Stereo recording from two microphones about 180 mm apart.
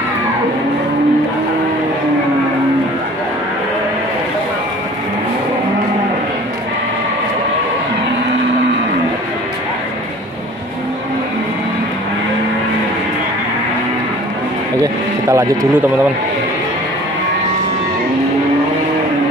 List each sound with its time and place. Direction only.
14.8 s vehicle: 15° right (ahead or behind)